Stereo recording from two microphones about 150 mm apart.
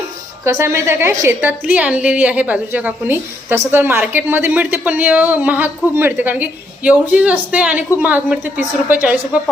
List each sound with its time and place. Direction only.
0.4 s a woman's voice: 15° right (ahead or behind)